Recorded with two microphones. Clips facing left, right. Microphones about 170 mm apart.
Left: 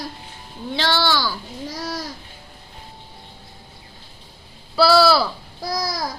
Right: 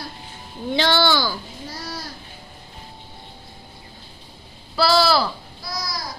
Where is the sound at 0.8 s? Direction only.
Centre (ahead or behind).